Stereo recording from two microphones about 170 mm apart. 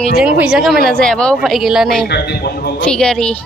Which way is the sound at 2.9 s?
5° left (ahead or behind).